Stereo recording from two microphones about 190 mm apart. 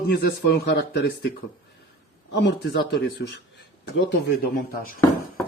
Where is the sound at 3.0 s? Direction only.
65° left (ahead or behind).